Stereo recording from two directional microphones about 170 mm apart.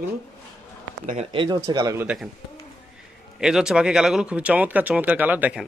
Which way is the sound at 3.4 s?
5° right (ahead or behind).